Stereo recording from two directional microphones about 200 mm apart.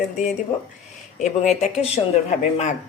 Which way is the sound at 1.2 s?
35° left (ahead or behind).